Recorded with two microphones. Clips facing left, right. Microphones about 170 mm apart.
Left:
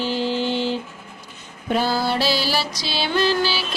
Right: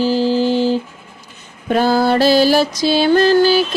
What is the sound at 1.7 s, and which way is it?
Music, 50° right (ahead or behind).